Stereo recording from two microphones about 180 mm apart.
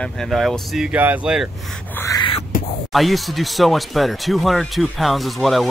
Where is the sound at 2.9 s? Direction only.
Centre (ahead or behind).